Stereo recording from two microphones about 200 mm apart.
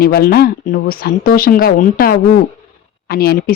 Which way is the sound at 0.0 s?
50° left (ahead or behind).